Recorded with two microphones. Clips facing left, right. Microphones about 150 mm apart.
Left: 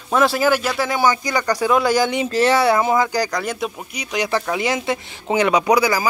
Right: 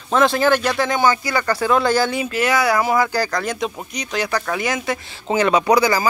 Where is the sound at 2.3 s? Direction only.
30° left (ahead or behind).